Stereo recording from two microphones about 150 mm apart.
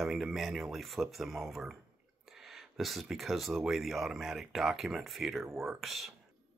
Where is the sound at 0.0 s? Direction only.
Centre (ahead or behind).